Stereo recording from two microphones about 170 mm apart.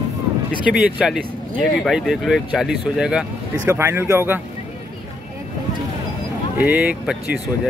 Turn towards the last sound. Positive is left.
turn(degrees=-10)  # may be behind; listen again after turning